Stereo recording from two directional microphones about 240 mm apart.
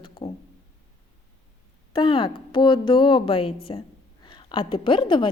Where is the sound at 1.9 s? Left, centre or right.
Centre.